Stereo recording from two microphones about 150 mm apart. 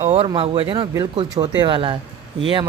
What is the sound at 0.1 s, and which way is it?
Speech, 40° right (ahead or behind).